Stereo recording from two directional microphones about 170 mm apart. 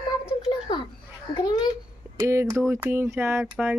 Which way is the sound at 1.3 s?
25° left (ahead or behind).